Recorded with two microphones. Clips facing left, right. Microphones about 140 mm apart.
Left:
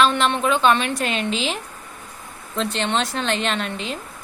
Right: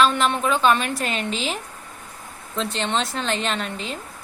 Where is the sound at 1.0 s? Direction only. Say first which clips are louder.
Left 3 dB; 40° right (ahead or behind).